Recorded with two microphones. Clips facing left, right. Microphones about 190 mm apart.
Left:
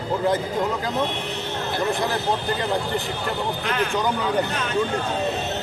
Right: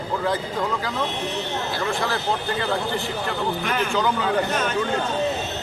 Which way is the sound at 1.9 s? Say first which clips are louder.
Even; 20° left (ahead or behind).